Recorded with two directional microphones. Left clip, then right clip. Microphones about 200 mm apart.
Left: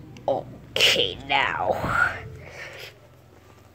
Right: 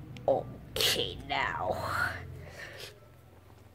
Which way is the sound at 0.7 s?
10° left (ahead or behind).